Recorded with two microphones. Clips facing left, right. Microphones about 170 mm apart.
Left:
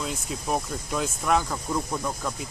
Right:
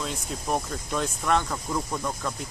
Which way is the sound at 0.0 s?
5° left (ahead or behind).